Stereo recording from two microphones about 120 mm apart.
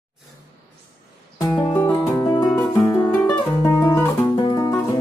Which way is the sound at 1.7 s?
20° left (ahead or behind).